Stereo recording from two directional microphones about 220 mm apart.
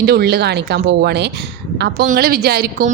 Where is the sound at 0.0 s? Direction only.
45° right (ahead or behind).